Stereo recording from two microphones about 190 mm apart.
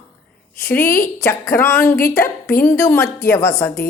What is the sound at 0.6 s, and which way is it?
A woman's voice, 10° left (ahead or behind).